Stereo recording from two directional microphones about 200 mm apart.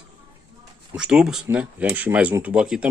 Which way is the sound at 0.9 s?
5° right (ahead or behind).